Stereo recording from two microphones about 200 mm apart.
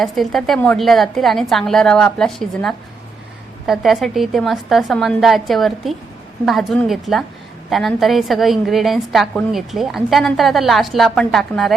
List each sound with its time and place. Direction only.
0.0 s a woman's voice: centre (ahead or behind)